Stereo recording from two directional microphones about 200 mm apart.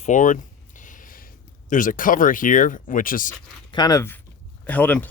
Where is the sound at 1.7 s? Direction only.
40° left (ahead or behind).